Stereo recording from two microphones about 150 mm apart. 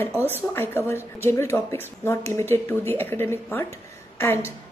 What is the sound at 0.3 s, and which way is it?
A woman's voice, 15° left (ahead or behind).